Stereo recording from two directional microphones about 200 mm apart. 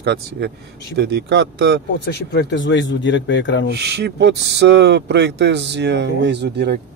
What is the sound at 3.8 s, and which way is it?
Speech, 55° right (ahead or behind).